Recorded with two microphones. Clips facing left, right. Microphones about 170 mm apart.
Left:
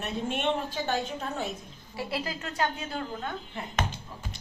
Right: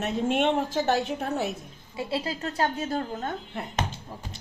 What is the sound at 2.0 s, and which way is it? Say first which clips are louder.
A woman's voice: right 3 dB; 25° right (ahead or behind).